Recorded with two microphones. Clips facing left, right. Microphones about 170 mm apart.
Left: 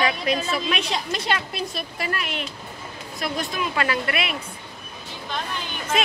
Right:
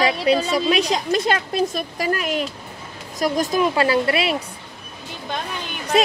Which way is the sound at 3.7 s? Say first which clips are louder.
Right 6 dB; 30° right (ahead or behind).